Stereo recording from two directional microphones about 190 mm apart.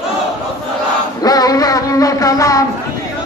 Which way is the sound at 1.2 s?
20° left (ahead or behind).